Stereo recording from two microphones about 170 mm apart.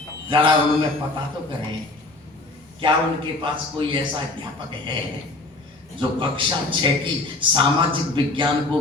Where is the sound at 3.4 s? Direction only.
30° right (ahead or behind).